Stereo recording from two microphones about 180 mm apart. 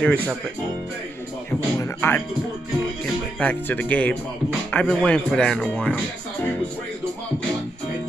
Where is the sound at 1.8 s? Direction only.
10° left (ahead or behind).